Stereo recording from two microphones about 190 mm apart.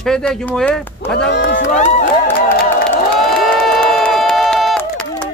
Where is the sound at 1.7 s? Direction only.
40° left (ahead or behind).